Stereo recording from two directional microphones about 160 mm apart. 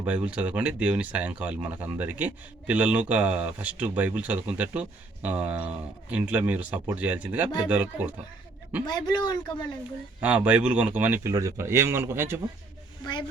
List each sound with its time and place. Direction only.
0.0 s speech: 10° right (ahead or behind)
8.9 s speech: 25° left (ahead or behind)
10.2 s speech: 10° right (ahead or behind)